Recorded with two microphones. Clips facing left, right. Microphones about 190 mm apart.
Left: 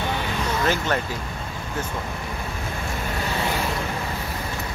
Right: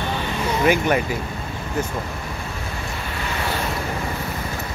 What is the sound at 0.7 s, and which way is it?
Speech, 15° right (ahead or behind).